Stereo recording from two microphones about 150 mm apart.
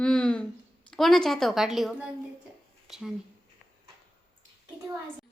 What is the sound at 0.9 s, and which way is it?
A child's voice, centre (ahead or behind).